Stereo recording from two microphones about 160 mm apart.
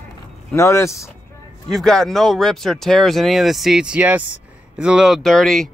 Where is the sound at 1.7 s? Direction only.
5° left (ahead or behind).